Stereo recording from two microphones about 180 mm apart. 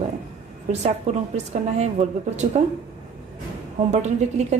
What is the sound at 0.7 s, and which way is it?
A woman's voice, 40° right (ahead or behind).